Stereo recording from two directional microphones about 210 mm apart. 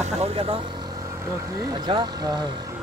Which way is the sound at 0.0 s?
30° right (ahead or behind).